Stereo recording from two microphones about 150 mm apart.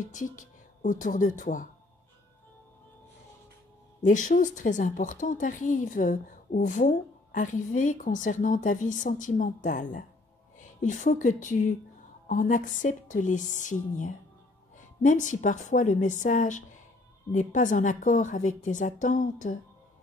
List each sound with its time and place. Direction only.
0.1 s a woman's voice: 60° left (ahead or behind)
4.0 s a woman's voice: 60° left (ahead or behind)